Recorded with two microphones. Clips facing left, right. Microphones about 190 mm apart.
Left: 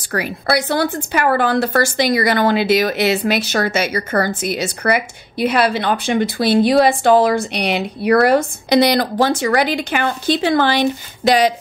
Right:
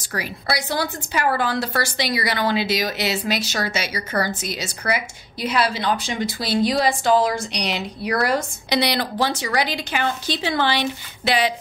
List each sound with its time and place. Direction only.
0.1 s a woman's voice: 60° left (ahead or behind)